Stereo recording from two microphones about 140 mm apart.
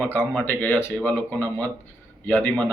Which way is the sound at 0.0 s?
15° left (ahead or behind).